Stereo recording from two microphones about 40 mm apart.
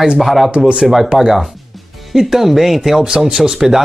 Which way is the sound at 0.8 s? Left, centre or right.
Centre.